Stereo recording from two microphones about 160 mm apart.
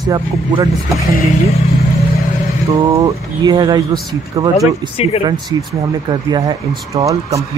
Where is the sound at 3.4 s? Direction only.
25° right (ahead or behind).